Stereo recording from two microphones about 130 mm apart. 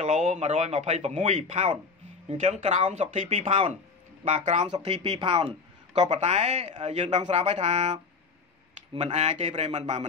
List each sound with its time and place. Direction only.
0.0 s speech: 60° right (ahead or behind)
5.1 s speech: 50° right (ahead or behind)
9.0 s speech: 65° right (ahead or behind)